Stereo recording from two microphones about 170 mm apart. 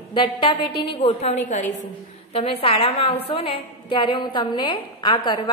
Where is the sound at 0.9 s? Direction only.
35° left (ahead or behind).